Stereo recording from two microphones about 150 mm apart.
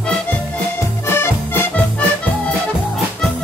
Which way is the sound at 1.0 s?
15° left (ahead or behind).